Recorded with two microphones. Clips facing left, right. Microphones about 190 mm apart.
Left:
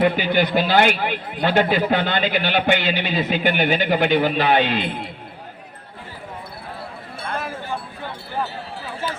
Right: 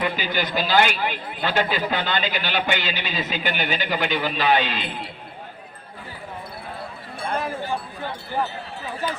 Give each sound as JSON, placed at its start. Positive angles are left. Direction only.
{"t": 0.0, "sound": "speech", "side_deg": 60}